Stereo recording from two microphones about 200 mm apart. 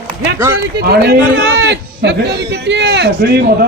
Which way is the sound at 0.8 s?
55° right (ahead or behind).